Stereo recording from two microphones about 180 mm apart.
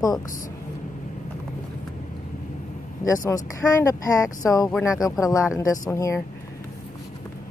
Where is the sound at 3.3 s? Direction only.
15° left (ahead or behind).